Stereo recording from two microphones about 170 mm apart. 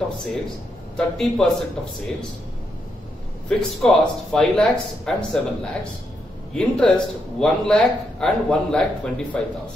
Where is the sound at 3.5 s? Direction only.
5° left (ahead or behind).